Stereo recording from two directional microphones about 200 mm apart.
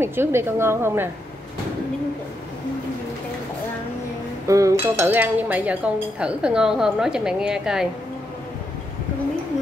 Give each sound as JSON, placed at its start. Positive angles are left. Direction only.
{"t": 0.0, "sound": "a woman's voice", "side_deg": -10}
{"t": 4.5, "sound": "a woman's voice", "side_deg": -15}